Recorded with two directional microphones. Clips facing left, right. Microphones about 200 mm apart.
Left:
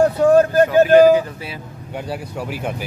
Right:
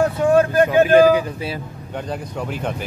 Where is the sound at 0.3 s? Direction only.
40° left (ahead or behind).